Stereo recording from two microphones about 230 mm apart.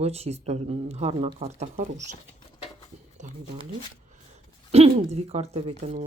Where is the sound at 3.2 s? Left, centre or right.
Right.